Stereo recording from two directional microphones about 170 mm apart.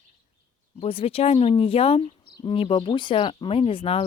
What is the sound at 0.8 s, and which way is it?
Speech, 35° left (ahead or behind).